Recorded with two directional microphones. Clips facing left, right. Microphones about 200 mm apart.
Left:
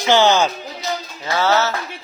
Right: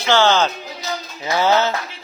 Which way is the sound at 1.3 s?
15° right (ahead or behind).